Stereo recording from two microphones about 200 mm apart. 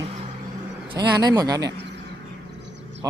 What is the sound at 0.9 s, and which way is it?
Speech, 20° right (ahead or behind).